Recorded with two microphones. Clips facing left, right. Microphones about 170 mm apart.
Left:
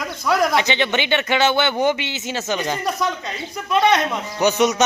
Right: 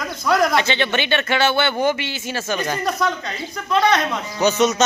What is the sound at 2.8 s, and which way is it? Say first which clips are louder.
Speech: right 1 dB; 5° left (ahead or behind).